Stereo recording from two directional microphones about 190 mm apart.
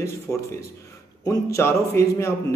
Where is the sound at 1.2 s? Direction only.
15° left (ahead or behind).